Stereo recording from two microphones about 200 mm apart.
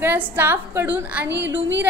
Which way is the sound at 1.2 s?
60° right (ahead or behind).